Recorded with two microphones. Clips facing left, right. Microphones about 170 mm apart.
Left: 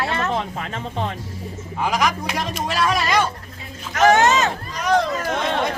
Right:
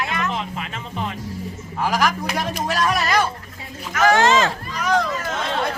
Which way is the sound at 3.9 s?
20° left (ahead or behind).